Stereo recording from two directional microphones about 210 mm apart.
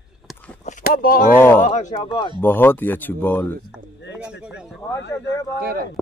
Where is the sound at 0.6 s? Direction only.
40° left (ahead or behind).